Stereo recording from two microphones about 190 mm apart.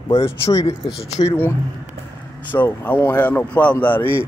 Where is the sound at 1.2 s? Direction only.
15° left (ahead or behind).